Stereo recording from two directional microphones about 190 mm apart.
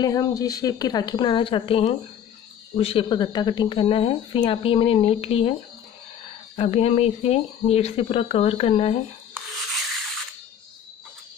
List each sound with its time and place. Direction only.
0.0 s speech: 20° left (ahead or behind)